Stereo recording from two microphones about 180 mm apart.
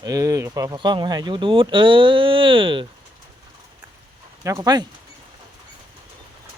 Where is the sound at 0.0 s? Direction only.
20° right (ahead or behind).